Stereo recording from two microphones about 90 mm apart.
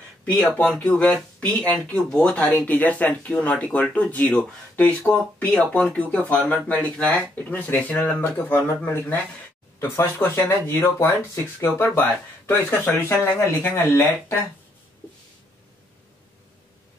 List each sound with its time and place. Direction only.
0.2 s speech: 15° left (ahead or behind)